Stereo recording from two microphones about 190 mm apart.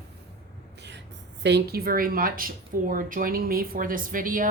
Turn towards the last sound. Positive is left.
turn(degrees=-45)  # may be behind; listen again after turning